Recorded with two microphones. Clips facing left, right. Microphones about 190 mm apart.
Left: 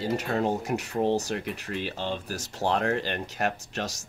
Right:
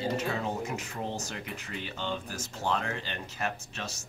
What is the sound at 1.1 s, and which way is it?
Speech, 35° left (ahead or behind).